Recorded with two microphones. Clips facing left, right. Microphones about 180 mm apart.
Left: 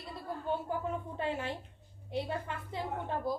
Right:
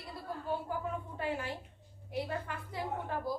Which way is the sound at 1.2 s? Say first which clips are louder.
Even; 25° left (ahead or behind).